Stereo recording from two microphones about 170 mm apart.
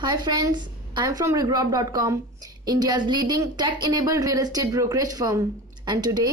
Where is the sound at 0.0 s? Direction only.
25° right (ahead or behind).